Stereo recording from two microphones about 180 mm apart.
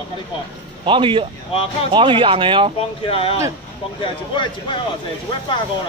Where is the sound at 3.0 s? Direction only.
30° left (ahead or behind).